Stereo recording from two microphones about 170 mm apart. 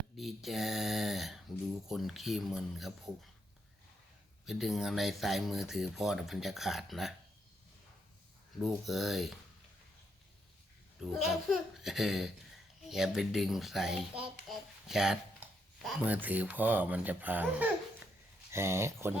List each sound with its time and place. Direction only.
0.2 s speech: centre (ahead or behind)
4.4 s speech: centre (ahead or behind)
8.6 s speech: centre (ahead or behind)
11.0 s speech: 5° right (ahead or behind)